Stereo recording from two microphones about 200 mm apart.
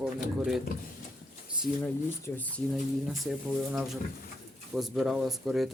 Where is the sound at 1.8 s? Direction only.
5° left (ahead or behind).